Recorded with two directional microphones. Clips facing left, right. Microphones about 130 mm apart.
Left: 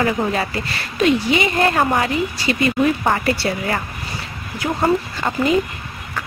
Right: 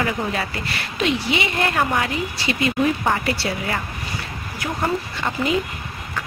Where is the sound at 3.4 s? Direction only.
50° left (ahead or behind).